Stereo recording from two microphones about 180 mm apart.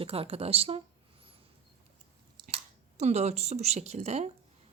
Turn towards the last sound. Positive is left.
turn(degrees=-35)  # may be behind; listen again after turning